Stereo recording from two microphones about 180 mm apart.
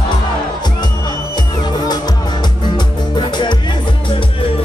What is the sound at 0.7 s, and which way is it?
Music, 25° left (ahead or behind).